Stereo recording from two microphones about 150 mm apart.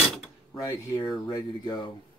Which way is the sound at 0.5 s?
25° left (ahead or behind).